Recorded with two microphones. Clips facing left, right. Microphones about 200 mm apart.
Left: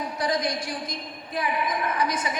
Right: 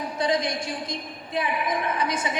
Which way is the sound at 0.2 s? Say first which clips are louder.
Right 2 dB; 25° right (ahead or behind).